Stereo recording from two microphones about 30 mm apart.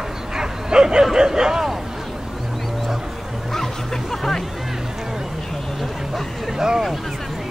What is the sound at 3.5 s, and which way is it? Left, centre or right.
Music, centre.